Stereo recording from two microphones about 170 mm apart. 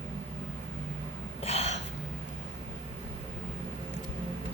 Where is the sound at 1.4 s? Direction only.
40° left (ahead or behind).